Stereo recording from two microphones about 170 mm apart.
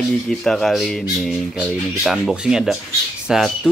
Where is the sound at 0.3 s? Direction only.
Centre (ahead or behind).